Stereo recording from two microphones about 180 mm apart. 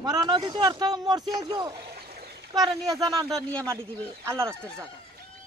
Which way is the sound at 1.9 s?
60° right (ahead or behind).